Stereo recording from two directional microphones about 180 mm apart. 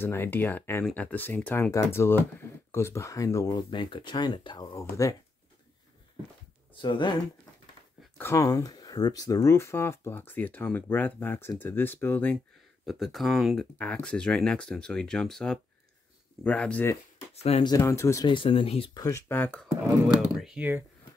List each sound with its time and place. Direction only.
0.0 s speech: 10° left (ahead or behind)
6.7 s speech: 25° left (ahead or behind)
8.2 s speech: 15° left (ahead or behind)
12.8 s speech: centre (ahead or behind)
17.4 s speech: 35° left (ahead or behind)
17.6 s speech: 15° left (ahead or behind)
19.0 s speech: 15° left (ahead or behind)
20.3 s speech: 5° right (ahead or behind)